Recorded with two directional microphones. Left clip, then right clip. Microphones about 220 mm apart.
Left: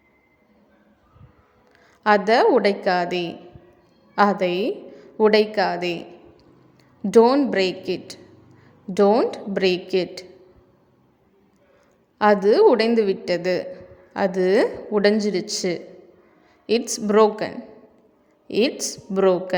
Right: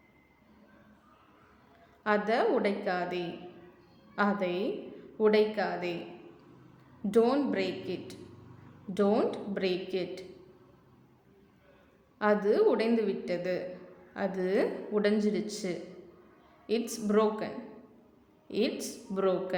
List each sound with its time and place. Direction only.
2.0 s a woman's voice: 35° left (ahead or behind)
7.0 s a woman's voice: 35° left (ahead or behind)
12.2 s a woman's voice: 35° left (ahead or behind)